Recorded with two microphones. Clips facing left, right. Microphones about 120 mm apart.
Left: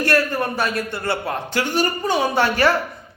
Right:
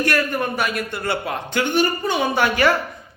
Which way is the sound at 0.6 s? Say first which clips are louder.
Left 1 dB; 30° left (ahead or behind).